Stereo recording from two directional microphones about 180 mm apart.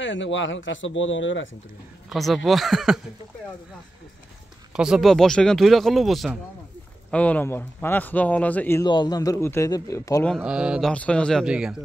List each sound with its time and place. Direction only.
0.0 s speech: 90° left
2.0 s speech: centre (ahead or behind)
4.7 s a man's voice: 5° right (ahead or behind)
8.8 s a man's voice: 25° left (ahead or behind)
10.2 s speech: centre (ahead or behind)
10.9 s speech: 5° left (ahead or behind)